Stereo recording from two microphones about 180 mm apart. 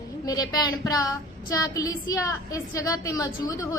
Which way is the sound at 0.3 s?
20° left (ahead or behind).